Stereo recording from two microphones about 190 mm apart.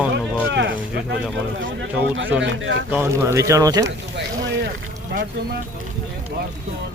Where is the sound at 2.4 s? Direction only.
75° right (ahead or behind).